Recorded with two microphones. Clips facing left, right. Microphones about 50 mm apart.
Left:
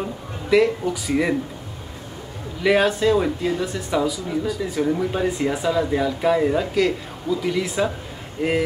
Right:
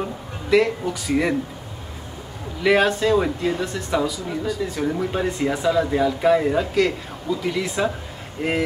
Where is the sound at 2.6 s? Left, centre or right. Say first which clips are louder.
Even; centre.